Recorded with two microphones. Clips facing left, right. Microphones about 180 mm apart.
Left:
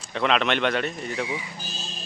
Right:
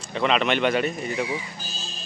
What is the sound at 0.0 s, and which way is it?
Speech, centre (ahead or behind).